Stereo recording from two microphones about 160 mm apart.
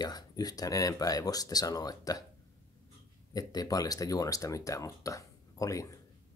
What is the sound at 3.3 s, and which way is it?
Speech, 25° left (ahead or behind).